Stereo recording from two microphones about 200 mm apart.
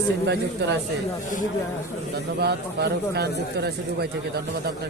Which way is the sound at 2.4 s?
55° right (ahead or behind).